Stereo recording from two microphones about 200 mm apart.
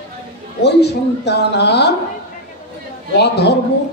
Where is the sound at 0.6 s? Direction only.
55° left (ahead or behind).